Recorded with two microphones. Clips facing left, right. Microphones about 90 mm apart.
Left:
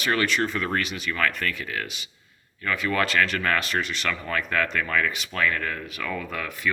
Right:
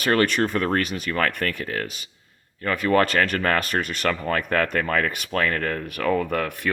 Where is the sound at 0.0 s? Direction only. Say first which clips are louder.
Right 4 dB; 45° right (ahead or behind).